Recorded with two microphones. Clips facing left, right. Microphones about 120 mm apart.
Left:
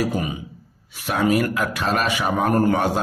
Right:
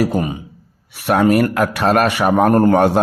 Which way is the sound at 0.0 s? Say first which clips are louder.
Right 5 dB; 50° right (ahead or behind).